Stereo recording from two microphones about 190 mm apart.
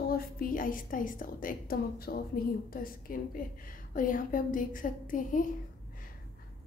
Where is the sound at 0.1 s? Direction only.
50° left (ahead or behind).